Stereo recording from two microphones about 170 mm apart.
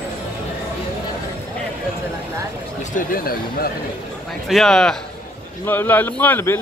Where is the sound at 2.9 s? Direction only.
60° left (ahead or behind).